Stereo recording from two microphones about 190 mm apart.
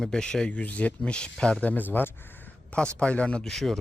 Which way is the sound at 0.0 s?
5° left (ahead or behind).